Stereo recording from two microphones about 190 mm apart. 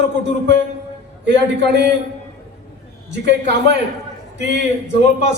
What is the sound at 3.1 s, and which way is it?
A man's voice, 65° right (ahead or behind).